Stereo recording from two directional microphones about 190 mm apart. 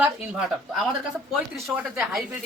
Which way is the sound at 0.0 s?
5° right (ahead or behind).